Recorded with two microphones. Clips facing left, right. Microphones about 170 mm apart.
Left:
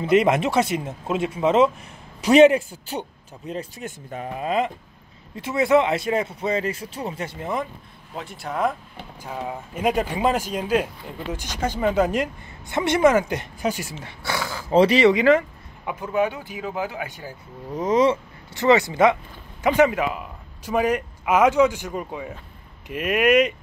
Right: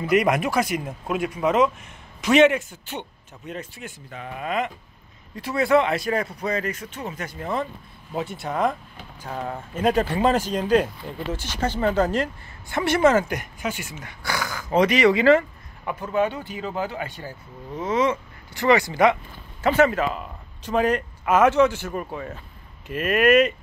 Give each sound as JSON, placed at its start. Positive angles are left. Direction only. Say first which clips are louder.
{"t": 0.0, "sound": "a man's voice", "louder": "left 2 dB", "side_deg": 25}
{"t": 4.3, "sound": "speech", "louder": "left 3 dB", "side_deg": 30}
{"t": 8.1, "sound": "speech", "louder": "right 3 dB", "side_deg": -5}
{"t": 13.6, "sound": "speech", "louder": "left 4 dB", "side_deg": 35}
{"t": 15.1, "sound": "speech", "louder": "even", "side_deg": 15}
{"t": 17.7, "sound": "a man's voice", "louder": "left 4 dB", "side_deg": 35}
{"t": 18.5, "sound": "speech", "louder": "left 2 dB", "side_deg": 25}